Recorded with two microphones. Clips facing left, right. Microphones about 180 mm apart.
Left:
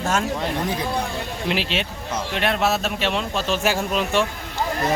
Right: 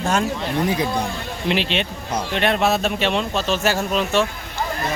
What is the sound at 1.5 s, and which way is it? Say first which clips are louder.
Speech: right 4 dB; 5° left (ahead or behind).